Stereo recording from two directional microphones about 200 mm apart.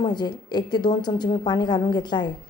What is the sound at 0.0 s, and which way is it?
A woman's voice, 20° left (ahead or behind).